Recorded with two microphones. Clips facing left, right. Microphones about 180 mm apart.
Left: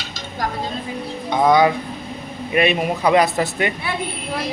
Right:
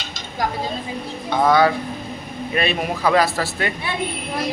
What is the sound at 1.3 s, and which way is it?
Speech, 15° left (ahead or behind).